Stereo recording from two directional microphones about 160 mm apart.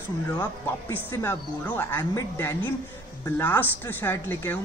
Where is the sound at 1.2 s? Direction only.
15° left (ahead or behind).